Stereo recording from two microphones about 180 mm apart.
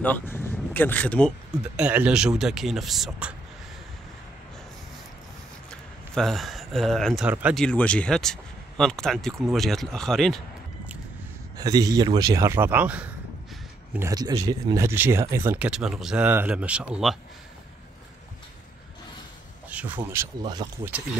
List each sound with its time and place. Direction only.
0.0 s speech: 10° left (ahead or behind)
1.8 s speech: 10° right (ahead or behind)
5.7 s speech: centre (ahead or behind)
7.6 s speech: 5° left (ahead or behind)
11.5 s speech: 20° right (ahead or behind)
13.9 s speech: 20° right (ahead or behind); by 17.2 s 5° right (ahead or behind)
20.0 s speech: 15° right (ahead or behind)